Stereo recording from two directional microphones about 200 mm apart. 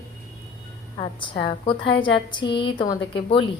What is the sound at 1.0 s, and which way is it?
A woman's voice, 25° left (ahead or behind).